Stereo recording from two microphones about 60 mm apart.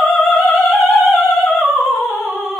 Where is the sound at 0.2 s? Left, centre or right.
Centre.